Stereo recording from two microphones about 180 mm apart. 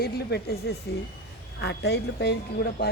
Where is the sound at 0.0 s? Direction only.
60° left (ahead or behind).